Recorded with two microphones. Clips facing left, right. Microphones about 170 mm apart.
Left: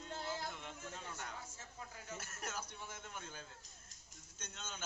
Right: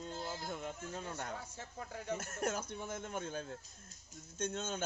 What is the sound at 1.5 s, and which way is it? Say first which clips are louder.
Speech: right 7 dB; 60° right (ahead or behind).